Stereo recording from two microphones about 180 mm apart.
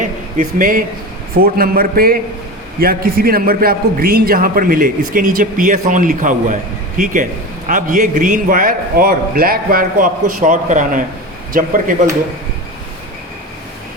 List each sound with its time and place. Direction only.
0.0 s a man's voice: 50° right (ahead or behind)